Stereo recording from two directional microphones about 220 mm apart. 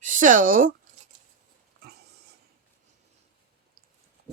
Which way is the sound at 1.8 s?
45° right (ahead or behind).